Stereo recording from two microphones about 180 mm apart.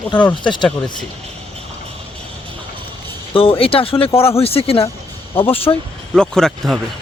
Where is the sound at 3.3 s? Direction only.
30° left (ahead or behind).